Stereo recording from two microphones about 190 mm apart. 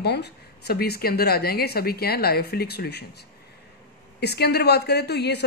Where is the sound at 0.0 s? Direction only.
60° left (ahead or behind).